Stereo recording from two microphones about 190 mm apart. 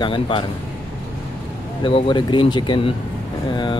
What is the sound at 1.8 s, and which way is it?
Speech, 25° left (ahead or behind).